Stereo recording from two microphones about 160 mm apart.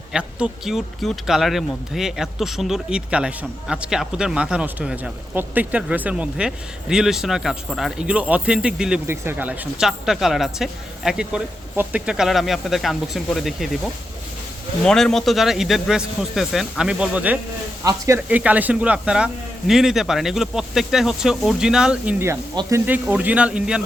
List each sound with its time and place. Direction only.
0.1 s speech: 5° right (ahead or behind)
17.8 s speech: 20° right (ahead or behind)
18.3 s speech: 10° right (ahead or behind)
22.6 s speech: 30° right (ahead or behind)
22.9 s speech: 10° right (ahead or behind)